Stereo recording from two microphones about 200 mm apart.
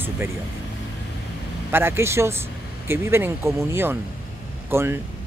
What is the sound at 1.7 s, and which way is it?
Speech, 10° right (ahead or behind).